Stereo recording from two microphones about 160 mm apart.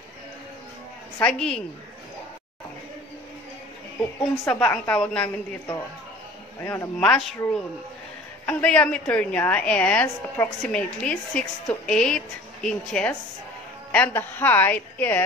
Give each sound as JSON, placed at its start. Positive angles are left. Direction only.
{"t": 1.2, "sound": "speech", "side_deg": 5}
{"t": 4.5, "sound": "a woman's voice", "side_deg": 10}
{"t": 6.6, "sound": "a woman's voice", "side_deg": 15}
{"t": 7.0, "sound": "speech", "side_deg": 5}
{"t": 8.5, "sound": "a woman's voice", "side_deg": 10}